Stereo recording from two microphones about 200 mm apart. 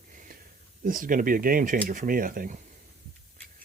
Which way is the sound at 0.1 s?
40° right (ahead or behind).